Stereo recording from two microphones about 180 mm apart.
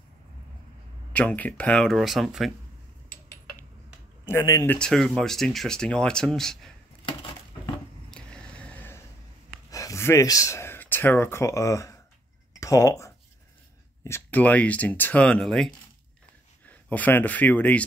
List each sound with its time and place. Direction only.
1.1 s speech: 10° left (ahead or behind)
4.3 s speech: 15° left (ahead or behind)
4.7 s speech: 5° left (ahead or behind)
8.1 s a sound: 5° left (ahead or behind)
9.7 s speech: 20° left (ahead or behind)